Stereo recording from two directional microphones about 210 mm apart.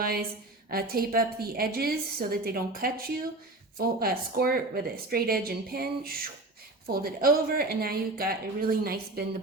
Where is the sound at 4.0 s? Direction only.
45° right (ahead or behind).